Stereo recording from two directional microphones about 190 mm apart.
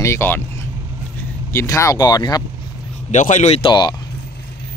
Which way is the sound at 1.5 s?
15° left (ahead or behind).